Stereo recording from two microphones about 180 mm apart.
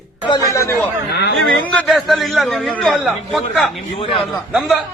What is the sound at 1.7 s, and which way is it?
A man's voice, centre (ahead or behind).